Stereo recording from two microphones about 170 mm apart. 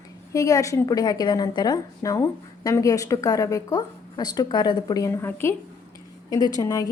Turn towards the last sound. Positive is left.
turn(degrees=20)  # may be behind; listen again after turning